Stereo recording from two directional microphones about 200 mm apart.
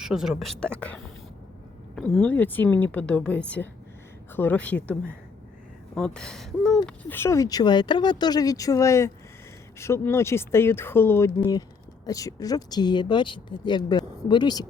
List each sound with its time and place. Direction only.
0.0 s a woman's voice: 5° right (ahead or behind); by 14.7 s 20° left (ahead or behind)